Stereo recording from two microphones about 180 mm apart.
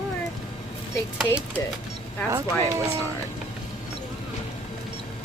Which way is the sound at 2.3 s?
15° right (ahead or behind).